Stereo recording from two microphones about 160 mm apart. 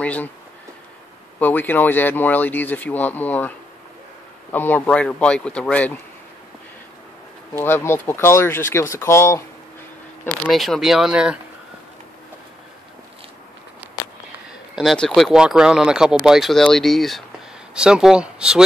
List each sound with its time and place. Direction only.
0.0 s speech: 10° left (ahead or behind)
1.4 s speech: 10° left (ahead or behind)
7.5 s speech: 15° left (ahead or behind)
10.2 s speech: 5° left (ahead or behind)
14.8 s speech: centre (ahead or behind)